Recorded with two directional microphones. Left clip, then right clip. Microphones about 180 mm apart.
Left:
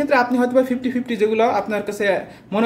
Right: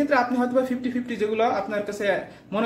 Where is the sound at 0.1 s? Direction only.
30° left (ahead or behind).